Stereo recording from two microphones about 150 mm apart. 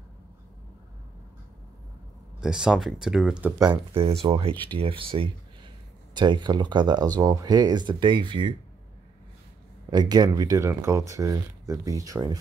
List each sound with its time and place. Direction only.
2.4 s speech: 5° right (ahead or behind)
3.5 s speech: 25° right (ahead or behind)
3.9 s speech: 40° right (ahead or behind)
9.8 s speech: 25° right (ahead or behind)